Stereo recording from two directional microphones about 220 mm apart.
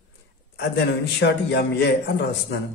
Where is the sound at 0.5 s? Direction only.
50° left (ahead or behind).